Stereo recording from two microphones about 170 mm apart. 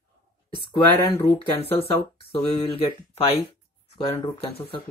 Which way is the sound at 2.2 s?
35° left (ahead or behind).